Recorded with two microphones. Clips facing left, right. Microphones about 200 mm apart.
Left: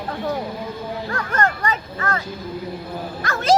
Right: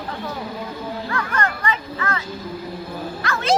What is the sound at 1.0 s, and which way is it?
Speech, 40° left (ahead or behind).